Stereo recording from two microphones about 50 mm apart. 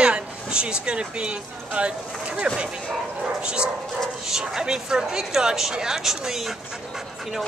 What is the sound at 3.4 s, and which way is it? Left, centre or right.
Dog, centre.